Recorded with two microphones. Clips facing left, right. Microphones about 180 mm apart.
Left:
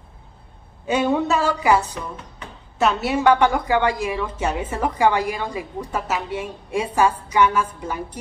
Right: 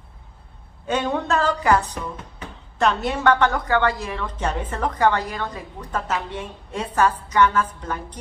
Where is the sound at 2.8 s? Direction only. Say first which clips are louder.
Left 2 dB; 5° left (ahead or behind).